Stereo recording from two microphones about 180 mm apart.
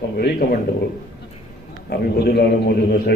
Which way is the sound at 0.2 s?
60° left (ahead or behind).